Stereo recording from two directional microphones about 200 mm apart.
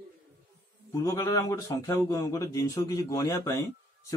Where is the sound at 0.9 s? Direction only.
15° left (ahead or behind).